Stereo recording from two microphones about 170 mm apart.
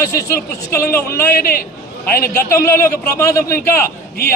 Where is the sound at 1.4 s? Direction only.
60° left (ahead or behind).